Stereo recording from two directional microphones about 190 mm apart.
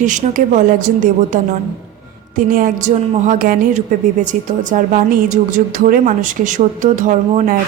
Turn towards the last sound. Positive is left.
turn(degrees=-45)  # may be behind; listen again after turning